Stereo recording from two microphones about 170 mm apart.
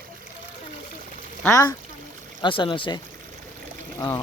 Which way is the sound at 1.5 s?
20° left (ahead or behind).